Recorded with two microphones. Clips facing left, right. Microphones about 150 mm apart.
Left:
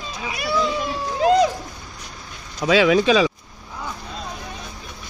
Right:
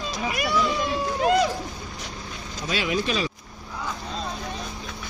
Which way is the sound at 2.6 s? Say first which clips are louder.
Left 10 dB; 90° left.